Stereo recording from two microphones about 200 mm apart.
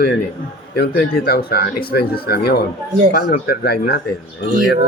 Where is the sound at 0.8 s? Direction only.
50° left (ahead or behind).